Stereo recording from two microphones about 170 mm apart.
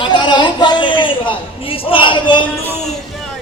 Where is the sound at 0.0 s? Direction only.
25° left (ahead or behind).